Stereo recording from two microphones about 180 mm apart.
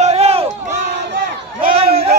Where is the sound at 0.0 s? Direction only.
35° right (ahead or behind).